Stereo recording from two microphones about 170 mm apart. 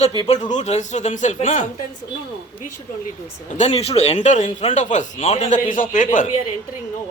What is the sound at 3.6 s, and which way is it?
Speech, 40° left (ahead or behind).